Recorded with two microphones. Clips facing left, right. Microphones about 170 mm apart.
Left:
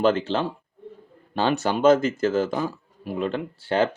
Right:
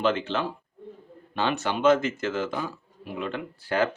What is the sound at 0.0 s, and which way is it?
Speech, 35° left (ahead or behind).